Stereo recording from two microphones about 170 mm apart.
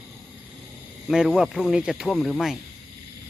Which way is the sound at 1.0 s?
5° right (ahead or behind).